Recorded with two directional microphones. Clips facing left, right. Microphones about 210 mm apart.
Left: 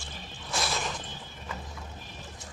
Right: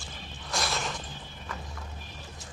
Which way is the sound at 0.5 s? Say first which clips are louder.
Even; centre (ahead or behind).